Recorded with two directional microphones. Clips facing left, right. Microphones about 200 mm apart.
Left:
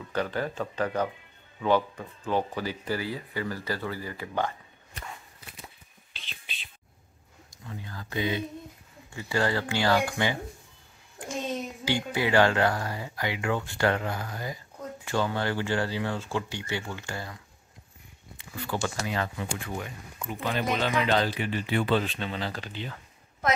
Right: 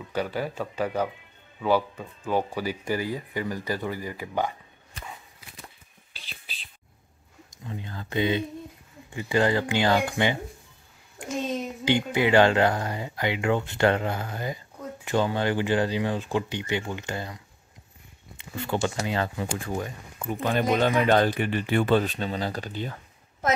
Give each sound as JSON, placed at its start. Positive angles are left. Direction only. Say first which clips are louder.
{"t": 0.1, "sound": "speech", "louder": "right 1 dB", "side_deg": -10}
{"t": 7.5, "sound": "speech", "louder": "right 4 dB", "side_deg": -20}
{"t": 11.9, "sound": "speech", "louder": "right 4 dB", "side_deg": -20}
{"t": 18.4, "sound": "speech", "louder": "right 4 dB", "side_deg": -25}
{"t": 20.2, "sound": "speech", "louder": "right 5 dB", "side_deg": -50}